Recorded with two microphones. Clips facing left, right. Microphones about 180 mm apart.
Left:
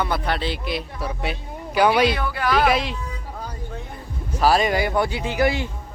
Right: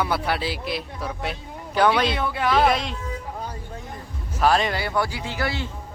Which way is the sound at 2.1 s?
25° right (ahead or behind).